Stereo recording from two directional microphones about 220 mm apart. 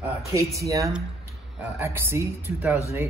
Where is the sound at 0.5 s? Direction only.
15° right (ahead or behind).